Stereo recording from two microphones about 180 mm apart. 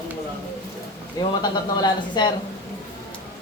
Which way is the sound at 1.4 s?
25° left (ahead or behind).